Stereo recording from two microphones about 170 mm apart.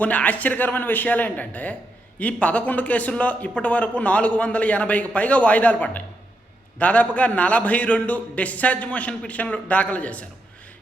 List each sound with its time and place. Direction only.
0.0 s a man's voice: 10° left (ahead or behind)